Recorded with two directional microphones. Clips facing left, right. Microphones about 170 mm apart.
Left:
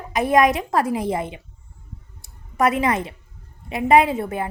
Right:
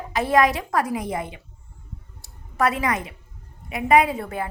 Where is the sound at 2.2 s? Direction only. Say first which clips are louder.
Left 2 dB; 20° left (ahead or behind).